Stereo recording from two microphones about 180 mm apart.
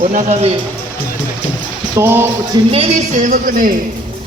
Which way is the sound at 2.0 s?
15° right (ahead or behind).